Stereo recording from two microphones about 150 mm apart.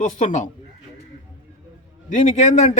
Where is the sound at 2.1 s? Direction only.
55° left (ahead or behind).